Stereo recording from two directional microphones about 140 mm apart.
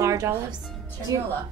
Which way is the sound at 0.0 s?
25° right (ahead or behind).